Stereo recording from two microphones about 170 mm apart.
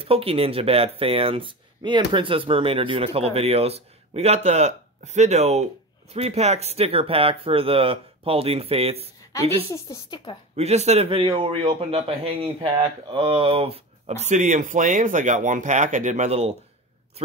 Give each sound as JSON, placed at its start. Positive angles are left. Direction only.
{"t": 0.0, "sound": "a man's voice", "side_deg": -35}
{"t": 9.3, "sound": "a woman's voice", "side_deg": 20}
{"t": 10.5, "sound": "a man's voice", "side_deg": -40}